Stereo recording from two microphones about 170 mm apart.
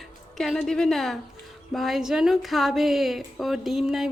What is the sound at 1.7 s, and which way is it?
Speech, centre (ahead or behind).